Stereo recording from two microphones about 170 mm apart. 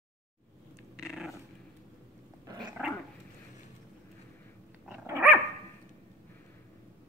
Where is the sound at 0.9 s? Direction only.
5° right (ahead or behind).